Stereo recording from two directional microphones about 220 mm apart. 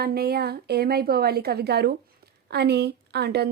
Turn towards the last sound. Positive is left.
turn(degrees=-50)  # may be behind; listen again after turning